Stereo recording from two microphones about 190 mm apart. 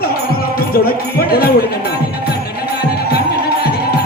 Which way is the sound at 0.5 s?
55° left (ahead or behind).